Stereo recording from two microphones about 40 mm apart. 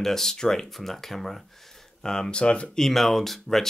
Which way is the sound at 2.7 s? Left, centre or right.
Centre.